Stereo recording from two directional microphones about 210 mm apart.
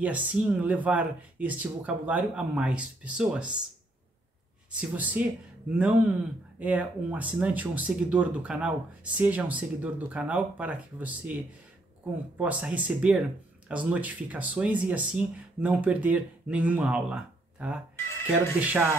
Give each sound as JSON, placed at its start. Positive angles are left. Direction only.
{"t": 0.0, "sound": "speech", "side_deg": -5}
{"t": 4.7, "sound": "speech", "side_deg": -5}
{"t": 12.4, "sound": "speech", "side_deg": -5}
{"t": 17.9, "sound": "music", "side_deg": 10}
{"t": 18.6, "sound": "speech", "side_deg": -5}